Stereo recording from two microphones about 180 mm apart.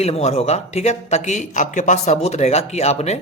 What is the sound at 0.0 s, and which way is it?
A man's voice, 35° left (ahead or behind).